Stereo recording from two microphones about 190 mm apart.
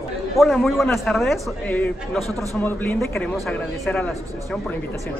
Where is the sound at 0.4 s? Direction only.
Centre (ahead or behind).